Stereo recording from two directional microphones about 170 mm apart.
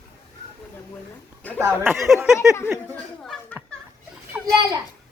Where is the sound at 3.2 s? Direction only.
5° left (ahead or behind).